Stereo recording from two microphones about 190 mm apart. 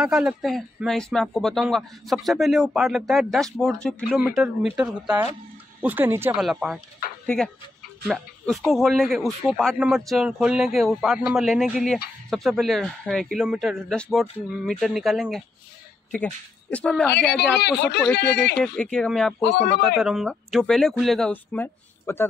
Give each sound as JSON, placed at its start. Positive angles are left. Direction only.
{"t": 0.0, "sound": "a man's voice", "side_deg": -5}
{"t": 16.7, "sound": "a man's voice", "side_deg": 5}
{"t": 17.6, "sound": "speech", "side_deg": 60}
{"t": 18.6, "sound": "a man's voice", "side_deg": 5}
{"t": 19.4, "sound": "speech", "side_deg": 65}
{"t": 20.0, "sound": "a man's voice", "side_deg": 0}